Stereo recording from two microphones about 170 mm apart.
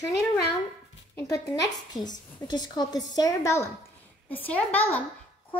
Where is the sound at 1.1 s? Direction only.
20° left (ahead or behind).